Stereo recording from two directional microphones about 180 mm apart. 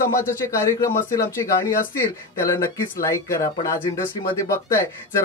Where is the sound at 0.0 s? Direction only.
15° left (ahead or behind).